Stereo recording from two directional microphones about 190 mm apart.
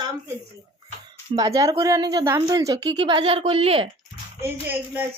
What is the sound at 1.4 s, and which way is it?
A woman's voice, 20° right (ahead or behind).